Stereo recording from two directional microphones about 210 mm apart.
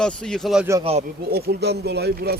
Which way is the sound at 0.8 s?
30° right (ahead or behind).